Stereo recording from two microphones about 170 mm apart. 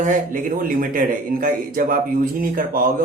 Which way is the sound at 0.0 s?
50° right (ahead or behind).